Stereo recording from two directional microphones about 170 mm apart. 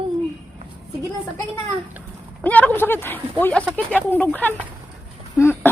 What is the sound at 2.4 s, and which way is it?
Speech, 10° left (ahead or behind).